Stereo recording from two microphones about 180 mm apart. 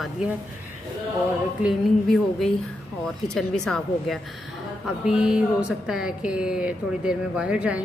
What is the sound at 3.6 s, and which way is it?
Speech, centre (ahead or behind).